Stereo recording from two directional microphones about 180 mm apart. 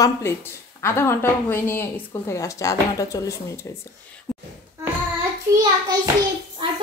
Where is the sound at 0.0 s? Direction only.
15° left (ahead or behind).